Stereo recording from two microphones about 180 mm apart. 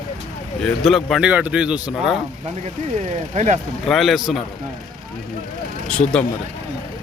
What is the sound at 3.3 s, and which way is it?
Speech, 40° right (ahead or behind).